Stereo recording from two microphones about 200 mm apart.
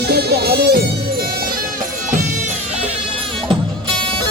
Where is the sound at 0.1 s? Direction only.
55° right (ahead or behind).